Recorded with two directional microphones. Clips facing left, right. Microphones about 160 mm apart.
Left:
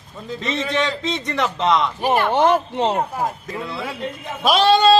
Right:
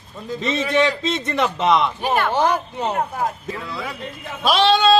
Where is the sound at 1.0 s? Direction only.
15° left (ahead or behind).